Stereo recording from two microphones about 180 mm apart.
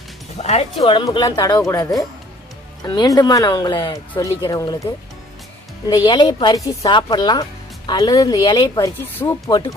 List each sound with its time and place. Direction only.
0.4 s speech: 35° left (ahead or behind); by 4.8 s 20° left (ahead or behind)
5.9 s speech: 20° left (ahead or behind)